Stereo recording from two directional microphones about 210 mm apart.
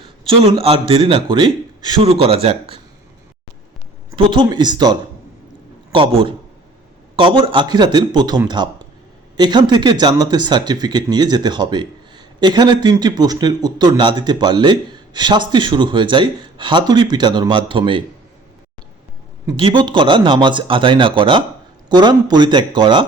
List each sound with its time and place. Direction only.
0.0 s speech: 25° right (ahead or behind)
4.1 s speech: 25° right (ahead or behind)
19.5 s speech: 25° right (ahead or behind)